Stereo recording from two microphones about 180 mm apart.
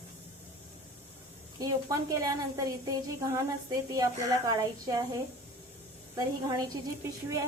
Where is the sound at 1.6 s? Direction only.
20° right (ahead or behind).